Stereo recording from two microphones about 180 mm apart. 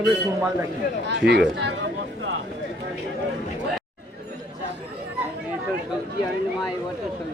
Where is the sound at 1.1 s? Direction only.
70° right (ahead or behind).